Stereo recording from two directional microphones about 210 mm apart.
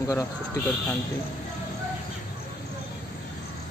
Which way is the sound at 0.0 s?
15° left (ahead or behind).